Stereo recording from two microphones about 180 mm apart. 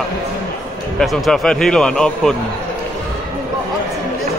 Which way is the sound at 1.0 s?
5° left (ahead or behind).